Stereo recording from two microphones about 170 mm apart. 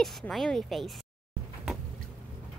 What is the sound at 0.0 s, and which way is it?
Speech, centre (ahead or behind).